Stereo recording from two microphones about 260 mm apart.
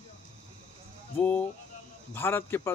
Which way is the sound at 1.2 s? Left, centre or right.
Centre.